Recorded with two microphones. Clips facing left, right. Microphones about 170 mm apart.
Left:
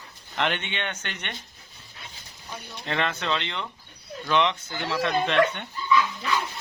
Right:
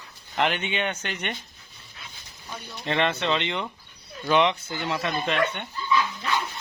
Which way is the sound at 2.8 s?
5° right (ahead or behind).